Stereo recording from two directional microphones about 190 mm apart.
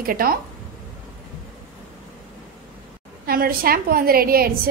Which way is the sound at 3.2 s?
50° right (ahead or behind).